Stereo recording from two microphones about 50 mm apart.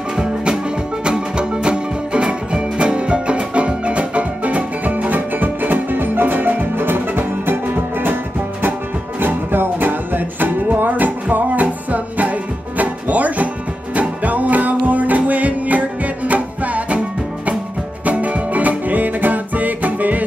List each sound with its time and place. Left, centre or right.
0.1 s music: centre; by 8.2 s right
9.2 s music: right
18.0 s music: right